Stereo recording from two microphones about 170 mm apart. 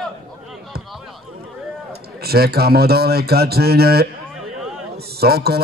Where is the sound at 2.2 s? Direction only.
65° right (ahead or behind).